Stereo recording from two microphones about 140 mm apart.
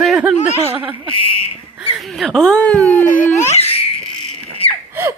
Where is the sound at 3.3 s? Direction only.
55° left (ahead or behind).